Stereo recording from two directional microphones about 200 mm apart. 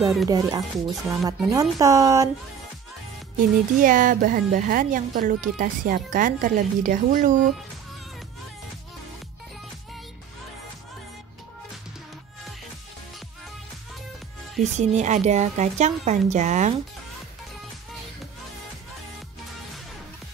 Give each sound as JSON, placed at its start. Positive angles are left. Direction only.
{"t": 0.3, "sound": "speech", "side_deg": -20}
{"t": 3.3, "sound": "speech", "side_deg": -45}
{"t": 14.6, "sound": "a woman's voice", "side_deg": -35}